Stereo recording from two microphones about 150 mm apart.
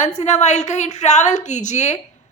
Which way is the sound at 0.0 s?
50° left (ahead or behind).